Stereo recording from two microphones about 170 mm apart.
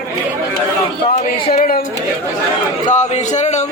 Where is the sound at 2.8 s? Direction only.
45° left (ahead or behind).